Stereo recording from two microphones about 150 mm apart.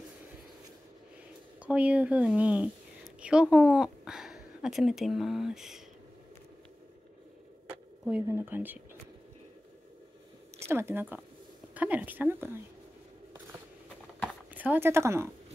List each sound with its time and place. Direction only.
1.7 s a woman's voice: 10° right (ahead or behind)
7.6 s a sound: 5° right (ahead or behind)
8.3 s speech: 15° right (ahead or behind)
10.7 s speech: 15° right (ahead or behind)
14.5 s speech: 10° right (ahead or behind)